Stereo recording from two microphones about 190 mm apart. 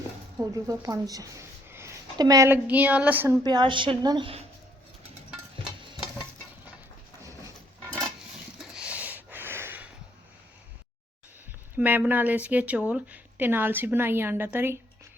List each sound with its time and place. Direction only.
0.3 s a woman's voice: 15° right (ahead or behind)
3.4 s a woman's voice: 25° right (ahead or behind)
8.7 s a sound: 5° right (ahead or behind)
11.8 s speech: 10° right (ahead or behind)